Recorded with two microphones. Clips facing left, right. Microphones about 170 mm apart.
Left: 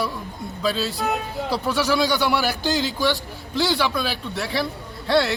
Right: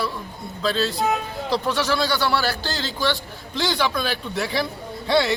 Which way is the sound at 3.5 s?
Centre (ahead or behind).